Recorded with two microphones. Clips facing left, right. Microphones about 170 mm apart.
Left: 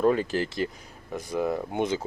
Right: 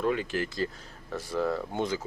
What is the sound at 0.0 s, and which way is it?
Speech, 40° left (ahead or behind).